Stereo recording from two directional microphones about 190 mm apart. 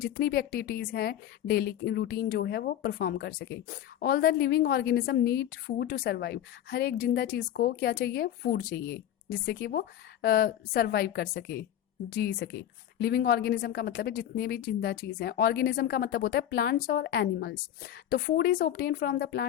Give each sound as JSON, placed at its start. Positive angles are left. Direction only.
{"t": 0.0, "sound": "a woman's voice", "side_deg": 50}